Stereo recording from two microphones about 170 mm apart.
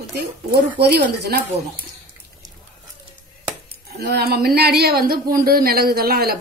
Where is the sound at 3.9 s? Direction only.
70° right (ahead or behind).